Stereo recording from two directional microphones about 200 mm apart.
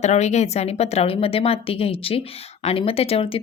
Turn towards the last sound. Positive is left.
turn(degrees=30)  # may be behind; listen again after turning